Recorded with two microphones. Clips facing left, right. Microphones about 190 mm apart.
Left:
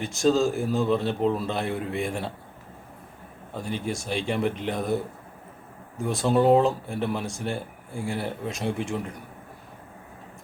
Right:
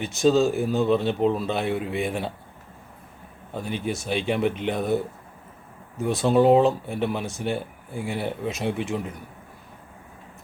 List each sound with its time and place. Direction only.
0.0 s speech: centre (ahead or behind)
3.8 s speech: centre (ahead or behind)
6.0 s speech: centre (ahead or behind)